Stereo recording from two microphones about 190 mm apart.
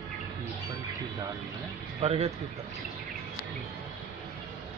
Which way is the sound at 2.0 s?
30° right (ahead or behind).